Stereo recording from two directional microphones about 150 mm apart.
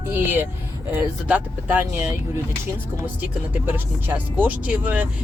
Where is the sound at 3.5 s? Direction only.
10° right (ahead or behind).